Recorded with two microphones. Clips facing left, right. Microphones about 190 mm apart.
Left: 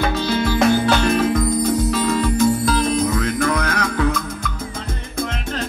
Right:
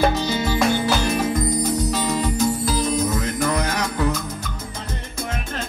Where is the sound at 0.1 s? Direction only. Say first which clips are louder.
Left 3 dB; 60° left (ahead or behind).